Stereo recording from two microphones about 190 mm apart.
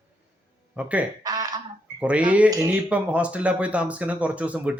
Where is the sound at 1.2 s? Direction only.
20° right (ahead or behind).